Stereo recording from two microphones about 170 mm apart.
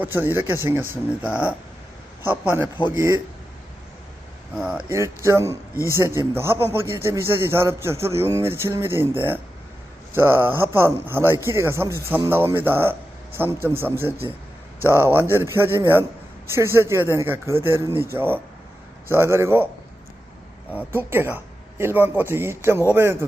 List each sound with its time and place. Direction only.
0.0 s a man's voice: 10° right (ahead or behind)
4.5 s speech: 5° right (ahead or behind)
4.9 s a man's voice: 15° right (ahead or behind)
20.7 s a man's voice: 15° right (ahead or behind)